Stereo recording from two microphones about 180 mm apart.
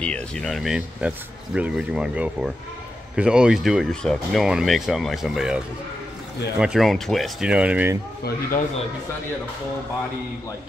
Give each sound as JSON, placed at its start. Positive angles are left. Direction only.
{"t": 0.0, "sound": "speech", "side_deg": 5}
{"t": 6.6, "sound": "speech", "side_deg": 0}
{"t": 8.2, "sound": "a man's voice", "side_deg": 50}